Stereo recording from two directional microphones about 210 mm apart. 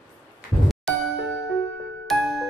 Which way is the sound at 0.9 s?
5° left (ahead or behind).